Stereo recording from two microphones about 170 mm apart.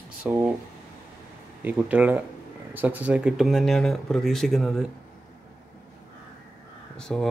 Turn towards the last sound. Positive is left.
turn(degrees=5)  # may be behind; listen again after turning